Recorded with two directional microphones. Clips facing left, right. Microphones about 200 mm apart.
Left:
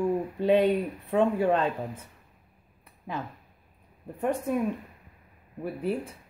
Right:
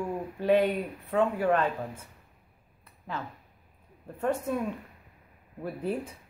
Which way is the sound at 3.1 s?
15° left (ahead or behind).